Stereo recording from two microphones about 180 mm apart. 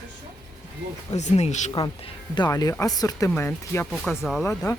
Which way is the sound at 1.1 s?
40° left (ahead or behind).